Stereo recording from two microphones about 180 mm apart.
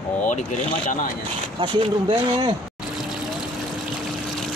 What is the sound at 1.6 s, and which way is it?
Speech, 30° right (ahead or behind).